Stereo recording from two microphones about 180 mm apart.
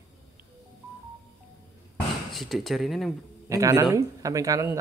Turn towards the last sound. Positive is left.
turn(degrees=-20)  # may be behind; listen again after turning